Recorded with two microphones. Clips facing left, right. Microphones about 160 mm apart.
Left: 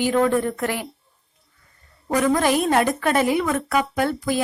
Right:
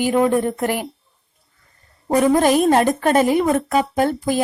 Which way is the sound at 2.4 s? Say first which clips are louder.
Right 4 dB; 45° right (ahead or behind).